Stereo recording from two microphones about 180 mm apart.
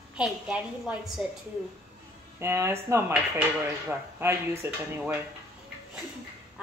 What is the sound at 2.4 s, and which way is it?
Speech, 15° right (ahead or behind).